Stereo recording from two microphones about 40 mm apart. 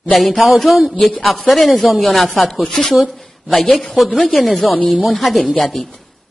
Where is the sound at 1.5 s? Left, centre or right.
Centre.